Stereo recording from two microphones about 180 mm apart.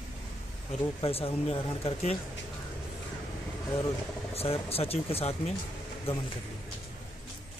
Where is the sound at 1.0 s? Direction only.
30° left (ahead or behind).